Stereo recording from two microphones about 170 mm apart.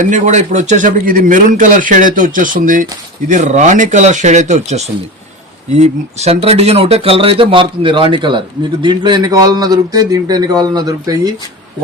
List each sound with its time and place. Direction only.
0.0 s a man's voice: 45° right (ahead or behind); by 11.3 s 20° right (ahead or behind)